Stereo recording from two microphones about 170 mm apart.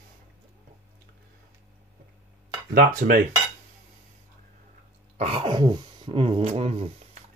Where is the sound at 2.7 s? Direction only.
65° right (ahead or behind).